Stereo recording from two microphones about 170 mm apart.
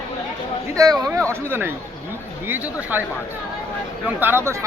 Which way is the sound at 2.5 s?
10° right (ahead or behind).